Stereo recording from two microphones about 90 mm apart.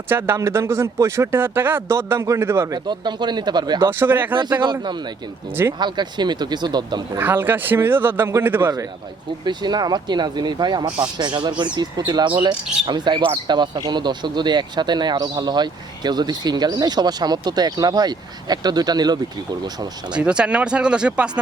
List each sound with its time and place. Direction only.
0.1 s speech: 25° right (ahead or behind)
2.6 s speech: 55° right (ahead or behind)
3.8 s speech: 25° right (ahead or behind)
4.6 s speech: 60° right (ahead or behind)
7.2 s speech: 20° right (ahead or behind)
9.4 s speech: 55° right (ahead or behind)
20.1 s speech: 10° right (ahead or behind)